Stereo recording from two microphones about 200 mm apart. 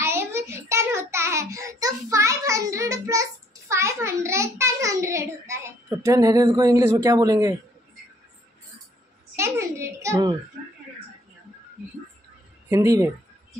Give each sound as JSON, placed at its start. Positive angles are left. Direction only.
{"t": 0.0, "sound": "child singing", "side_deg": -15}
{"t": 9.3, "sound": "a child's voice", "side_deg": -15}
{"t": 12.6, "sound": "a child's voice", "side_deg": -15}